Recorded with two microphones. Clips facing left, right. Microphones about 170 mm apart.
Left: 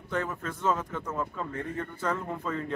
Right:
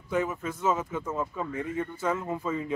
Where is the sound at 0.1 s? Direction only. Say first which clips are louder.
Right 3 dB; 10° right (ahead or behind).